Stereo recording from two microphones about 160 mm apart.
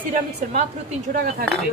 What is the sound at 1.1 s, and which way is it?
Speech, 65° right (ahead or behind).